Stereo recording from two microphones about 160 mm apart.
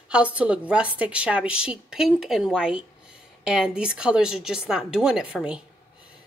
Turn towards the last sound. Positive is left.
turn(degrees=-5)  # may be behind; listen again after turning